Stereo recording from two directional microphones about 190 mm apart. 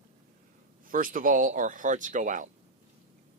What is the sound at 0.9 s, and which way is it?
Speech, 45° right (ahead or behind).